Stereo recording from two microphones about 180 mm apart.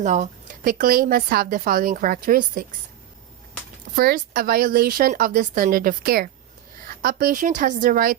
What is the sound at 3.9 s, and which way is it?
A woman's voice, 55° right (ahead or behind).